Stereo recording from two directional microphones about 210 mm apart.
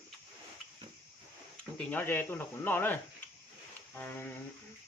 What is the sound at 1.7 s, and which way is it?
Speech, 10° left (ahead or behind).